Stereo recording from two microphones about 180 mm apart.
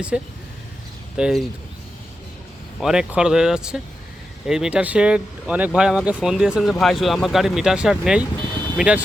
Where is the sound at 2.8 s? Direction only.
5° right (ahead or behind).